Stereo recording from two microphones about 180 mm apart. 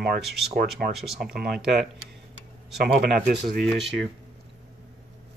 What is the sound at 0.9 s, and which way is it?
Speech, centre (ahead or behind).